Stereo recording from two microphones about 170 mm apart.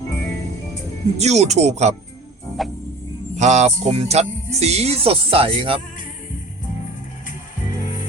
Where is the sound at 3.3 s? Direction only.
40° right (ahead or behind).